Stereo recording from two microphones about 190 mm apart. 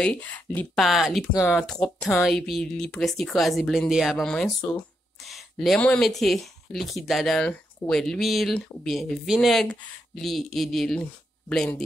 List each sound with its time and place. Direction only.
0.0 s speech: 5° left (ahead or behind)